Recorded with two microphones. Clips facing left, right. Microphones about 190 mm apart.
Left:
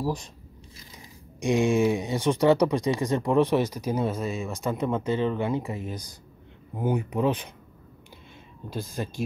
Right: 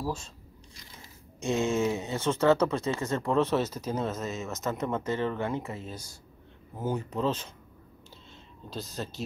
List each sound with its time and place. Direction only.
0.0 s speech: 15° left (ahead or behind)
8.7 s speech: 10° left (ahead or behind)